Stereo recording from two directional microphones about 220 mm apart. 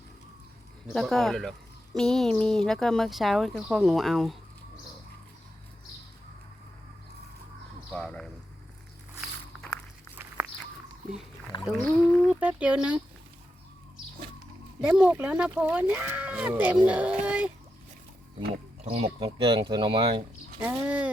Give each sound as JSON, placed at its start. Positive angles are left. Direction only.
{"t": 0.9, "sound": "speech", "side_deg": 0}
{"t": 7.9, "sound": "a sound", "side_deg": 5}
{"t": 9.2, "sound": "walk", "side_deg": 5}
{"t": 11.5, "sound": "a sound", "side_deg": 20}
{"t": 11.9, "sound": "speech", "side_deg": 0}
{"t": 14.8, "sound": "speech", "side_deg": -5}
{"t": 18.9, "sound": "speech", "side_deg": -25}
{"t": 20.6, "sound": "speech", "side_deg": -5}